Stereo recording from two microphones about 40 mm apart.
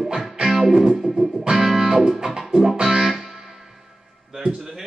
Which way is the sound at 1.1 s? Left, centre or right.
Centre.